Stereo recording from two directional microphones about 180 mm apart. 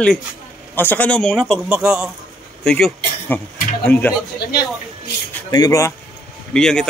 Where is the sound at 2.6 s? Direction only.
5° left (ahead or behind).